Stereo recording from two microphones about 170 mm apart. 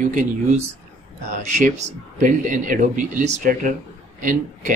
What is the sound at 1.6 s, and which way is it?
Speech, 45° right (ahead or behind).